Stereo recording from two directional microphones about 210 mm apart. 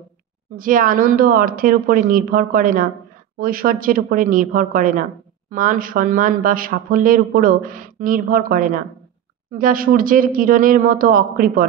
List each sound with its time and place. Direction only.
0.6 s speech: 40° right (ahead or behind)